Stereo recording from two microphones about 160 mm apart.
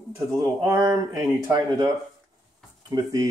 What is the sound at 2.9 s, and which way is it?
Speech, 25° right (ahead or behind).